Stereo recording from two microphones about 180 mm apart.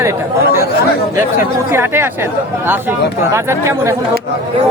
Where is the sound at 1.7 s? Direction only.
15° right (ahead or behind).